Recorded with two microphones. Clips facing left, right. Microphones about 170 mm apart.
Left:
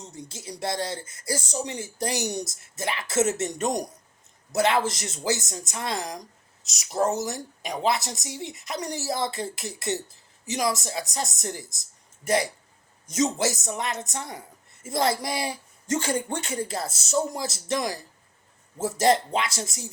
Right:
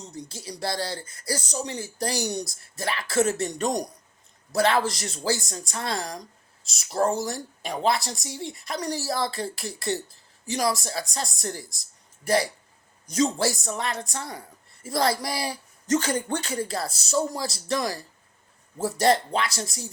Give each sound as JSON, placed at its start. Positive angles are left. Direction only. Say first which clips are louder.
{"t": 0.2, "sound": "speech", "louder": "right 1 dB", "side_deg": 20}